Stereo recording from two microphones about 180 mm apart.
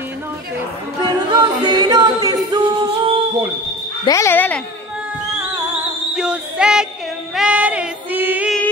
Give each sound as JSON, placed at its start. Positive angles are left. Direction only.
{"t": 1.0, "sound": "singing", "side_deg": -25}
{"t": 4.0, "sound": "speech", "side_deg": 15}
{"t": 6.1, "sound": "music", "side_deg": -5}
{"t": 7.3, "sound": "female singing", "side_deg": -5}